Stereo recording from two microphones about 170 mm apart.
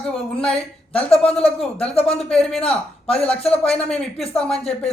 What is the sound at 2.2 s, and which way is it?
Speech, 5° left (ahead or behind).